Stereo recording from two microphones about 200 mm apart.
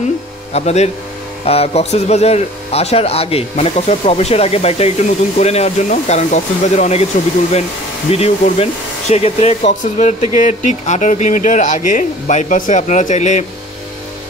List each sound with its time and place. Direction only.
0.5 s speech: 30° left (ahead or behind)
8.1 s speech: 30° left (ahead or behind)